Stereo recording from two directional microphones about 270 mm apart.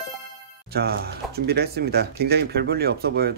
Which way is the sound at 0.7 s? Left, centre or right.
Right.